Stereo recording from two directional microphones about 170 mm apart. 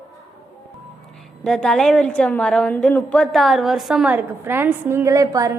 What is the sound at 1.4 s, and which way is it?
A woman's voice, 5° left (ahead or behind).